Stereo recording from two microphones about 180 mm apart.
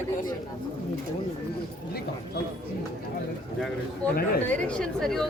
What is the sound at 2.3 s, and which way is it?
Speech, 65° left (ahead or behind).